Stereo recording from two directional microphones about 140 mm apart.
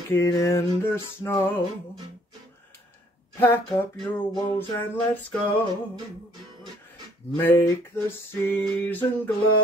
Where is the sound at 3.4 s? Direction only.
15° left (ahead or behind).